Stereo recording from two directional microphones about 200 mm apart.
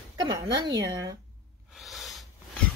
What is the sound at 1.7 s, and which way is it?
Snort, centre (ahead or behind).